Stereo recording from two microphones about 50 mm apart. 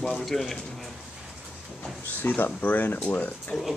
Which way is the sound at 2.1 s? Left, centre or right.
Left.